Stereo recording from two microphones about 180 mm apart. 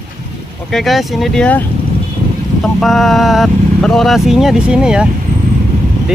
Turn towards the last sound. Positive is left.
turn(degrees=-5)  # may be behind; listen again after turning